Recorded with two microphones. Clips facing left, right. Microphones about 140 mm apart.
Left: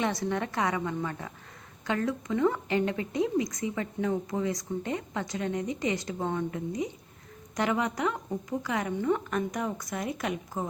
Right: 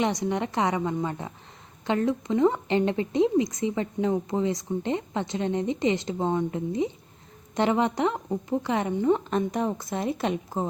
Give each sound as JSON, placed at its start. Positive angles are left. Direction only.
{"t": 0.0, "sound": "a woman's voice", "side_deg": -20}